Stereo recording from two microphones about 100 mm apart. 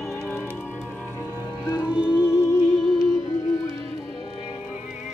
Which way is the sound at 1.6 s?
25° left (ahead or behind).